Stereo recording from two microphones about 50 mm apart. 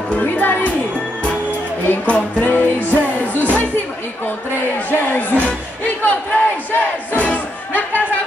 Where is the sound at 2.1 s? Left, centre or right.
Left.